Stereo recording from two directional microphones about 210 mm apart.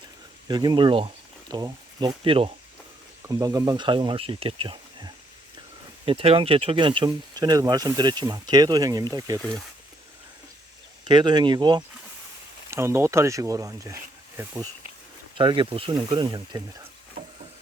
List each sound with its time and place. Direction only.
0.4 s speech: 20° right (ahead or behind)
11.0 s speech: 20° right (ahead or behind)